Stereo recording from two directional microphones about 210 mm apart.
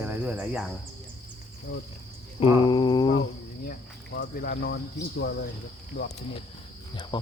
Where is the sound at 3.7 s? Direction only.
50° left (ahead or behind).